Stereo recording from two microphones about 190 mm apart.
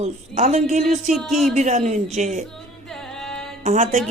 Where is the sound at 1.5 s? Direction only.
40° right (ahead or behind).